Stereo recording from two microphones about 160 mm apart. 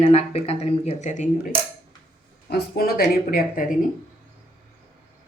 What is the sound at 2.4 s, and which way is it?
Speech, 80° left.